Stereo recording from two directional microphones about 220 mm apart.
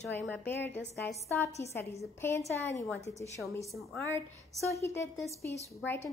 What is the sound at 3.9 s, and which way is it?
A woman's voice, 10° left (ahead or behind).